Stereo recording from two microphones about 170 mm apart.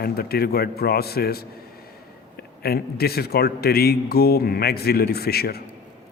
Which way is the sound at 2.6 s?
65° left (ahead or behind).